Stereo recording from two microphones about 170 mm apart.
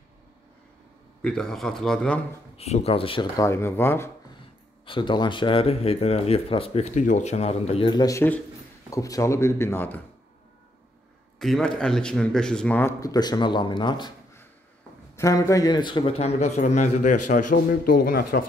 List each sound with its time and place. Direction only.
1.2 s a man's voice: 5° left (ahead or behind)
2.5 s a man's voice: 35° left (ahead or behind)
3.4 s a man's voice: 15° left (ahead or behind)
4.8 s a man's voice: 30° left (ahead or behind)
7.9 s a man's voice: 20° left (ahead or behind)
11.3 s a man's voice: centre (ahead or behind); by 14.1 s 25° left (ahead or behind)
15.1 s a man's voice: 20° left (ahead or behind); by 18.4 s 65° left (ahead or behind)